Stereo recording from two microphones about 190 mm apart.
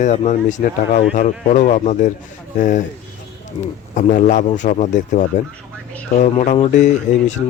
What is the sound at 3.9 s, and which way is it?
Speech, 40° left (ahead or behind).